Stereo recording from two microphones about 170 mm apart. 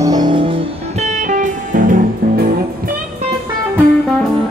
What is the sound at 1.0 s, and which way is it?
Music, 50° right (ahead or behind).